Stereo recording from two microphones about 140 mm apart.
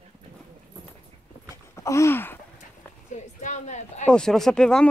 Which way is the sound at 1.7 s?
20° left (ahead or behind).